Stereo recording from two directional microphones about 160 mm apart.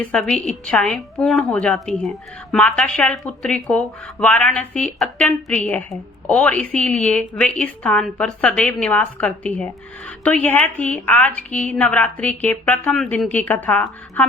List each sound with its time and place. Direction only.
0.1 s a woman's voice: 5° left (ahead or behind)